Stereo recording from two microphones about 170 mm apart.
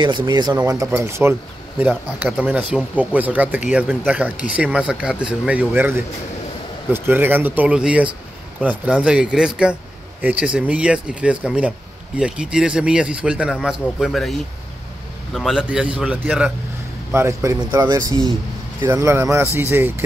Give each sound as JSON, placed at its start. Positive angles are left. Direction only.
{"t": 0.0, "sound": "speech", "side_deg": -25}
{"t": 0.7, "sound": "speech", "side_deg": -15}
{"t": 15.3, "sound": "speech", "side_deg": -5}
{"t": 17.1, "sound": "speech", "side_deg": -15}